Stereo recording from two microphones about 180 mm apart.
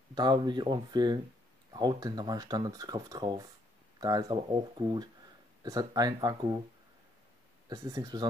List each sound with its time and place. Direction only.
0.1 s speech: 25° right (ahead or behind)
7.7 s speech: 20° right (ahead or behind)